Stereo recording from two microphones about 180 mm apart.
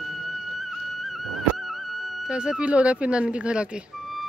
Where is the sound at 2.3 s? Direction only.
5° right (ahead or behind).